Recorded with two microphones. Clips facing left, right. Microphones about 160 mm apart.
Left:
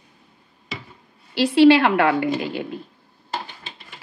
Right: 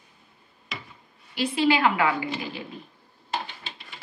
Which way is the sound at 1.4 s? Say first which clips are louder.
Left 9 dB; 70° left (ahead or behind).